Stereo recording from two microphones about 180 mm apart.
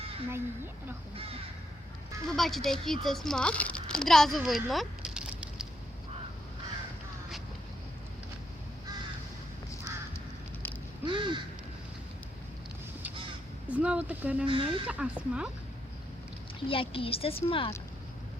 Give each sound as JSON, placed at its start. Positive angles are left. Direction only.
{"t": 0.3, "sound": "speech", "side_deg": -10}
{"t": 2.2, "sound": "speech", "side_deg": 0}
{"t": 11.0, "sound": "crow", "side_deg": -25}
{"t": 13.7, "sound": "a sound", "side_deg": -5}
{"t": 14.4, "sound": "speech", "side_deg": -30}
{"t": 14.8, "sound": "speech", "side_deg": -5}
{"t": 16.6, "sound": "a woman's voice", "side_deg": 30}